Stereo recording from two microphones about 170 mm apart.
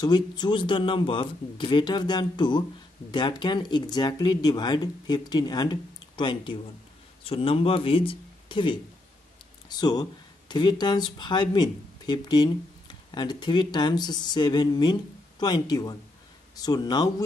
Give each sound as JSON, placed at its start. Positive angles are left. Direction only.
{"t": 0.0, "sound": "speech", "side_deg": 25}